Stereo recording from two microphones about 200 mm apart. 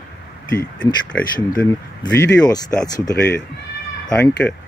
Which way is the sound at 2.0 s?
20° left (ahead or behind).